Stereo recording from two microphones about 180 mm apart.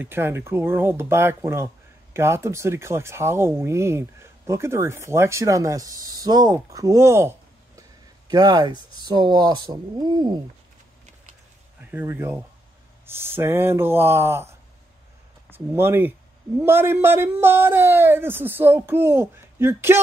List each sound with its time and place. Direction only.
0.0 s speech: 10° right (ahead or behind)
8.3 s speech: 25° right (ahead or behind)
11.9 s speech: 10° right (ahead or behind)
15.5 s a man's voice: 10° right (ahead or behind)